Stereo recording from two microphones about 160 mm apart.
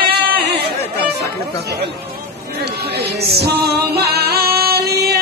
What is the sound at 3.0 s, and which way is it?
Music, 85° right.